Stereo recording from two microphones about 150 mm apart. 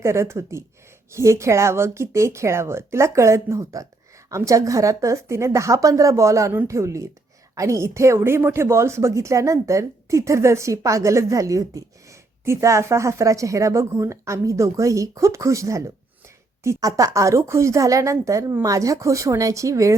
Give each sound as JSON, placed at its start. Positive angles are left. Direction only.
{"t": 0.0, "sound": "a woman's voice", "side_deg": -15}